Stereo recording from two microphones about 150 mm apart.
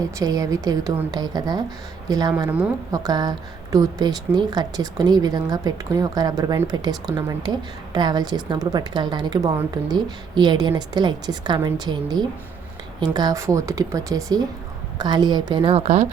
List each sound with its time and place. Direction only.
0.0 s a woman's voice: 25° right (ahead or behind); by 16.0 s 45° right (ahead or behind)